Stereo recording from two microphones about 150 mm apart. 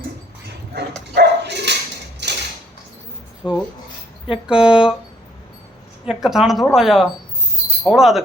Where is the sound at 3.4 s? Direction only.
30° left (ahead or behind).